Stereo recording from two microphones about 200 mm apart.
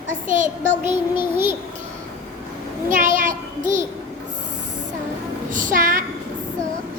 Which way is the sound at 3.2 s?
40° right (ahead or behind).